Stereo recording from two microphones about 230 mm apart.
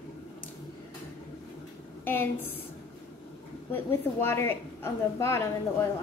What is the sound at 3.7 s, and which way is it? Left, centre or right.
A woman's voice, centre.